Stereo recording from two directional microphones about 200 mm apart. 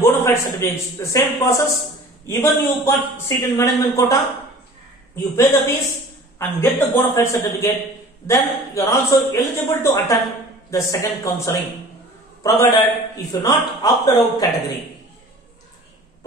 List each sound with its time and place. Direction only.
0.0 s a man's voice: 15° left (ahead or behind)